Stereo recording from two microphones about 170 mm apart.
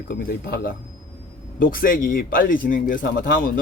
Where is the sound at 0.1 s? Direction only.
60° left (ahead or behind).